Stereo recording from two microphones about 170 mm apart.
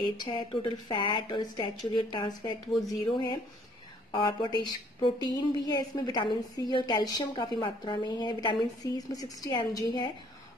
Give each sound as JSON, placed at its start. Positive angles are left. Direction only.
{"t": 0.0, "sound": "a woman's voice", "side_deg": 30}